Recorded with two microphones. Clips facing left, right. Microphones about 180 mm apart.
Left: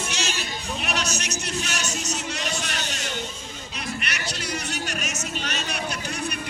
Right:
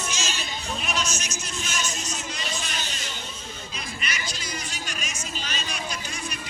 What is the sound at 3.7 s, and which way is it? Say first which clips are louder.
Music: left 4 dB; 70° left (ahead or behind).